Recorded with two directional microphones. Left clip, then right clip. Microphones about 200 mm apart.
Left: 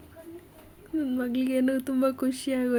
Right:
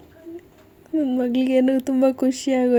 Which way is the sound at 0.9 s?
20° right (ahead or behind).